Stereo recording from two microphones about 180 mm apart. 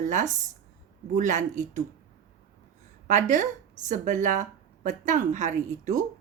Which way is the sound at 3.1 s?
45° right (ahead or behind).